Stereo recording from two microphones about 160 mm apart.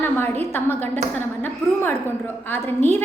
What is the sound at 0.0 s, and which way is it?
A woman's voice, 15° left (ahead or behind).